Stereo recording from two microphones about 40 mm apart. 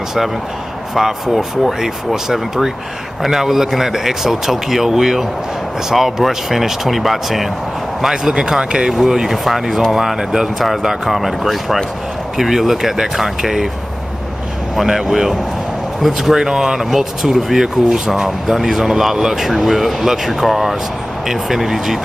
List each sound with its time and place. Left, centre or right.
0.9 s speech: centre
8.0 s speech: centre
14.8 s speech: centre
19.5 s speech: centre